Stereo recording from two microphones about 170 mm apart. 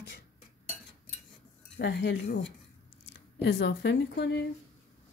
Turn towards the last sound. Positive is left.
turn(degrees=90)